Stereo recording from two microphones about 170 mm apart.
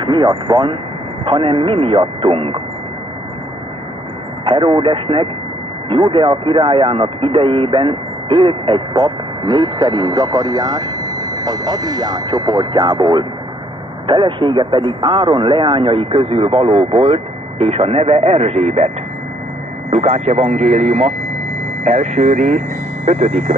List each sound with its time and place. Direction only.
0.0 s speech: 25° right (ahead or behind)
4.5 s speech: 25° right (ahead or behind)
19.9 s speech: 40° right (ahead or behind)